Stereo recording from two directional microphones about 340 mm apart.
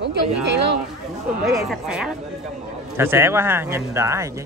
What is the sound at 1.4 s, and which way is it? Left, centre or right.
Speech, centre.